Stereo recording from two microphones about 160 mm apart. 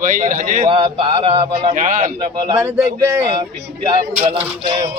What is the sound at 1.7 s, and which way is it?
Speech, 50° right (ahead or behind).